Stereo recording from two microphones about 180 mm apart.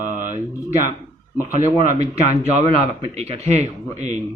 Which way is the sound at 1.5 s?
45° right (ahead or behind).